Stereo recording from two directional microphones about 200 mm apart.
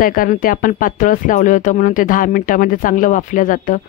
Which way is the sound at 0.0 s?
45° left (ahead or behind).